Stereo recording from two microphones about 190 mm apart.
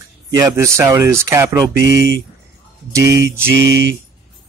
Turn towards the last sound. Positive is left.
turn(degrees=-65)  # may be behind; listen again after turning